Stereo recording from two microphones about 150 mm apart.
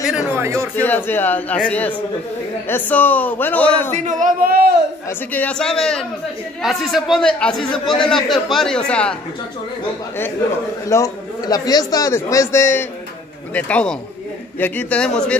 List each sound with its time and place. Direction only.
0.4 s speech: 20° right (ahead or behind)
0.7 s a man's voice: 10° left (ahead or behind)
3.9 s a man's voice: 55° right (ahead or behind); by 4.7 s 85° right
5.3 s speech: 10° left (ahead or behind)
10.9 s a man's voice: 25° left (ahead or behind); by 15.3 s 5° left (ahead or behind)